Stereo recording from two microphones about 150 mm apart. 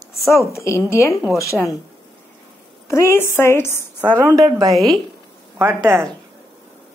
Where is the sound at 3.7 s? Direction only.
15° right (ahead or behind).